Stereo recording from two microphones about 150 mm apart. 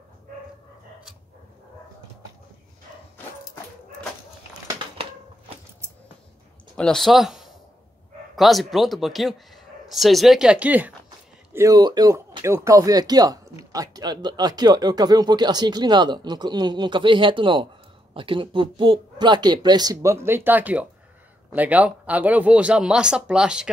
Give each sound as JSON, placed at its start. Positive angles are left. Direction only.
{"t": 6.8, "sound": "speech", "side_deg": 5}
{"t": 11.5, "sound": "speech", "side_deg": -25}